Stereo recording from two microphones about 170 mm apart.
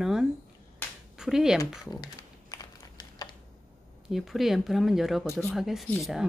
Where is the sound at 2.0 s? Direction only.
25° left (ahead or behind).